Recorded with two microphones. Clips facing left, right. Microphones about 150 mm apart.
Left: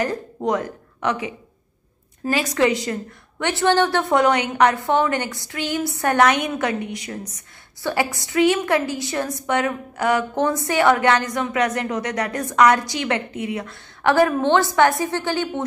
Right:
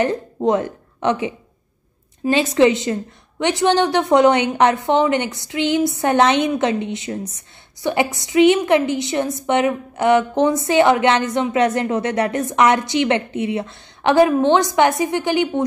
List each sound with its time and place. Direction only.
0.0 s a woman's voice: 25° right (ahead or behind)